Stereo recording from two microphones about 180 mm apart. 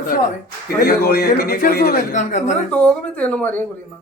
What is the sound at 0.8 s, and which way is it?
A man's voice, 60° left (ahead or behind).